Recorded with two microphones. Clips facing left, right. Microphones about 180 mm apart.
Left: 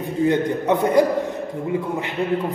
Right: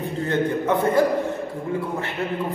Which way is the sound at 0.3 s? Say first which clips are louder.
Even; 15° left (ahead or behind).